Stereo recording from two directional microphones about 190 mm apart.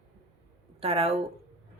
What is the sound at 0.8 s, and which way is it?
Speech, 30° right (ahead or behind).